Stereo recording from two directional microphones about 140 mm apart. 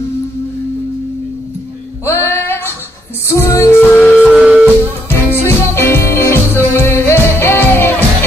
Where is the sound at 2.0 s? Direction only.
15° left (ahead or behind).